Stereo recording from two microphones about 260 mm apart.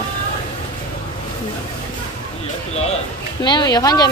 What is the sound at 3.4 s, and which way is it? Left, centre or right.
Speech, centre.